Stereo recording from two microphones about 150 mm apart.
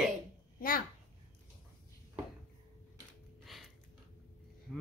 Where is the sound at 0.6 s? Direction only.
70° left (ahead or behind).